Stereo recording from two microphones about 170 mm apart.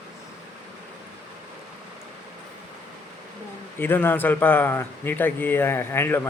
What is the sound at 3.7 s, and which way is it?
Speech, 10° left (ahead or behind).